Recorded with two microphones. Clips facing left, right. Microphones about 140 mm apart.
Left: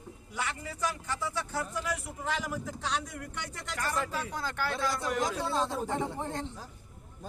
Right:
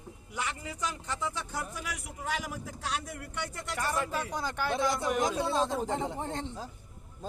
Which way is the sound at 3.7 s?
15° right (ahead or behind).